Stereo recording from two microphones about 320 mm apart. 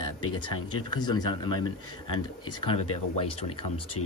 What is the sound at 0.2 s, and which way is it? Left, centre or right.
Speech, left.